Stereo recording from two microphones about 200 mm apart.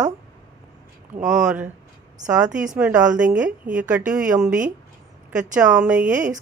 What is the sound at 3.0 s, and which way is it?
Speech, 40° right (ahead or behind).